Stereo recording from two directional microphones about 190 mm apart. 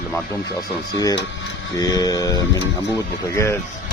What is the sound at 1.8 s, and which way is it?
Speech, 20° left (ahead or behind).